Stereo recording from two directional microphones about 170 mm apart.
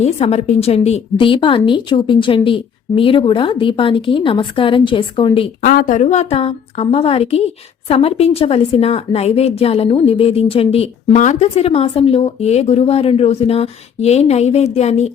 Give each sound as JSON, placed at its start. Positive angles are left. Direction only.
{"t": 0.0, "sound": "a woman's voice", "side_deg": 40}
{"t": 5.6, "sound": "a woman's voice", "side_deg": 55}